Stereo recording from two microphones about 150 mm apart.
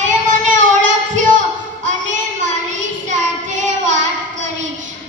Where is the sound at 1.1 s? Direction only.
55° right (ahead or behind).